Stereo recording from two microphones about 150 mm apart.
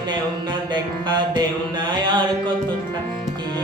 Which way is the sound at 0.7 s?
30° right (ahead or behind).